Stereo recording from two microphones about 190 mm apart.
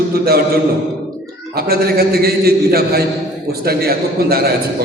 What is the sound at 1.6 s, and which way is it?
A man's voice, 55° right (ahead or behind).